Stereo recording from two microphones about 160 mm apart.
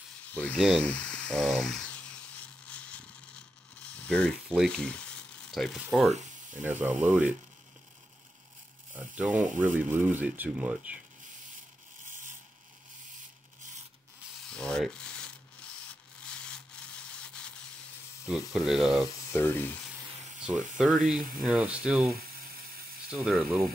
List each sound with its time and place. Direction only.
0.3 s a sound: 10° left (ahead or behind)
4.6 s speech: 5° left (ahead or behind)
6.6 s speech: 10° right (ahead or behind)
8.9 s speech: 10° right (ahead or behind)
9.4 s speech: 50° right (ahead or behind)
9.8 s speech: 10° right (ahead or behind)
14.5 s sanding: 5° left (ahead or behind)
16.2 s rub: 5° left (ahead or behind)
18.2 s speech: 5° right (ahead or behind)
19.3 s sizzle: 15° left (ahead or behind)
20.4 s speech: 5° right (ahead or behind)